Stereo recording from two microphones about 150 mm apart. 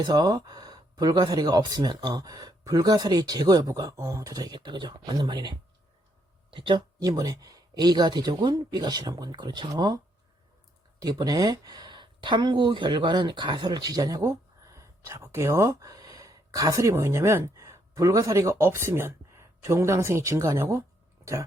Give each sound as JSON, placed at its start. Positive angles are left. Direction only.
{"t": 0.0, "sound": "speech", "side_deg": -25}
{"t": 11.0, "sound": "speech", "side_deg": -25}